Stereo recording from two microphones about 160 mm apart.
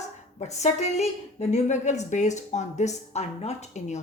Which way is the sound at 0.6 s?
45° left (ahead or behind).